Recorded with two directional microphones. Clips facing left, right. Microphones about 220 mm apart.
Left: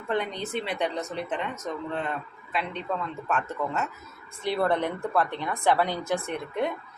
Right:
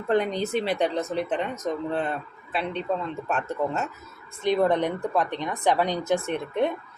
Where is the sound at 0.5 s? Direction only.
35° right (ahead or behind).